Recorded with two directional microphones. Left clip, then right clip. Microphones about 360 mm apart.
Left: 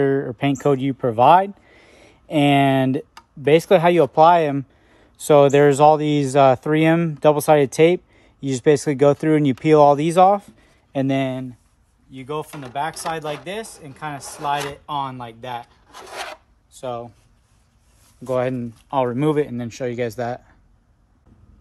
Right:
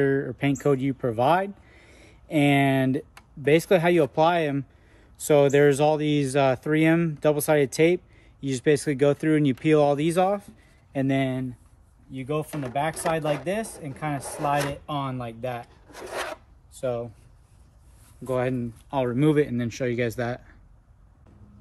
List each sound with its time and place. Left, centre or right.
0.0 s speech: centre
16.0 s filing: centre
16.7 s speech: centre
18.2 s speech: left